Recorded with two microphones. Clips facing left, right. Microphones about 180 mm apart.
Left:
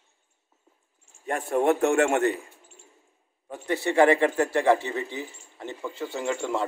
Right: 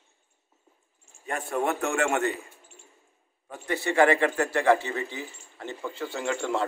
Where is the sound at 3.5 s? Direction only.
25° left (ahead or behind); by 6.6 s 10° left (ahead or behind).